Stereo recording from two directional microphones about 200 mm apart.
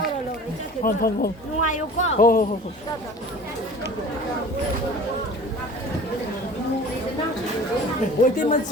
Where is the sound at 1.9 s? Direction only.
80° left.